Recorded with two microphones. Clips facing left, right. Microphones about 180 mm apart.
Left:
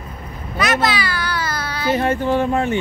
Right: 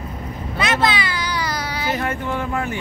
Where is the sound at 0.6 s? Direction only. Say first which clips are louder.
Left 1 dB; 25° right (ahead or behind).